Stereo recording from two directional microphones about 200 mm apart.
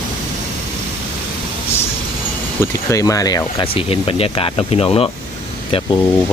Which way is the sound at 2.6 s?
15° left (ahead or behind).